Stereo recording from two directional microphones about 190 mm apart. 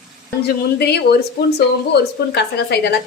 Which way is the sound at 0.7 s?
60° left (ahead or behind).